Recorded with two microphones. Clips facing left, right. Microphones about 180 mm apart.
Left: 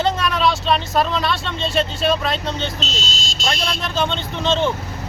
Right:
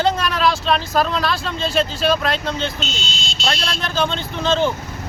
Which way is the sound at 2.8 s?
40° left (ahead or behind).